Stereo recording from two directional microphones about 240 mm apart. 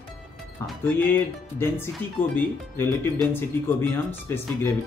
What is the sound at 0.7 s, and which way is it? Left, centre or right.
Speech, centre.